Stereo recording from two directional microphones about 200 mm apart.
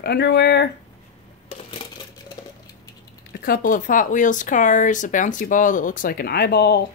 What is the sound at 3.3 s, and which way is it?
Speech, 45° left (ahead or behind).